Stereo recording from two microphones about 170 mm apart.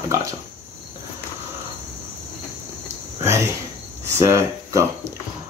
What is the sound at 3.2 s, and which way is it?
Cricket, 15° right (ahead or behind).